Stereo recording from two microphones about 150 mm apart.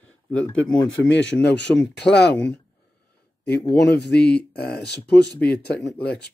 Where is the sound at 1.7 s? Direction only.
20° left (ahead or behind).